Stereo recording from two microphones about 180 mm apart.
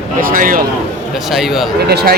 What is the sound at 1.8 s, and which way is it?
Speech, 60° right (ahead or behind).